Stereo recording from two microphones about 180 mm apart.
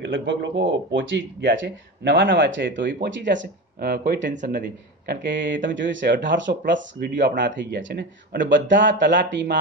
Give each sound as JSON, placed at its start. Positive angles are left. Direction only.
{"t": 0.0, "sound": "speech", "side_deg": -85}
{"t": 3.0, "sound": "speech", "side_deg": -75}
{"t": 8.0, "sound": "speech", "side_deg": -50}
{"t": 8.5, "sound": "speech", "side_deg": -85}